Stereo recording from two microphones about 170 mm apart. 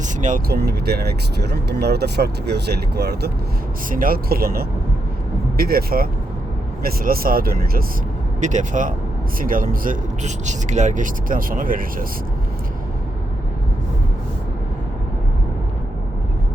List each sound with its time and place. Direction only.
0.0 s speech: 50° right (ahead or behind); by 3.3 s 70° right (ahead or behind)
3.8 s speech: 55° right (ahead or behind)
8.4 s speech: 45° right (ahead or behind)